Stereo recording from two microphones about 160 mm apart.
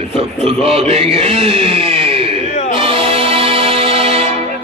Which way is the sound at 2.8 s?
35° right (ahead or behind).